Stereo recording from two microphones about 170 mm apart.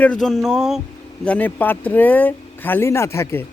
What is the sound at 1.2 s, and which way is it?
Speech, 10° left (ahead or behind).